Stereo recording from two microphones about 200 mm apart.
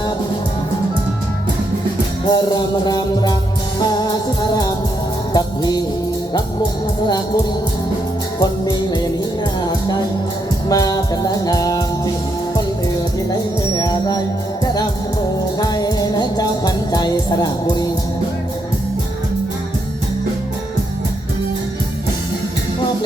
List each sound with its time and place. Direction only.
2.3 s music: 20° left (ahead or behind)
5.3 s music: 20° left (ahead or behind)
8.4 s music: 20° left (ahead or behind)
10.7 s music: 20° left (ahead or behind)
13.7 s music: 20° left (ahead or behind)